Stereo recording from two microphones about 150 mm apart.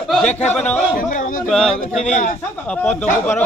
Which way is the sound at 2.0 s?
50° left (ahead or behind).